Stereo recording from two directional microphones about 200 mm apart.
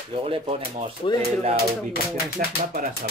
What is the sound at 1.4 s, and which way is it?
Music, 30° right (ahead or behind).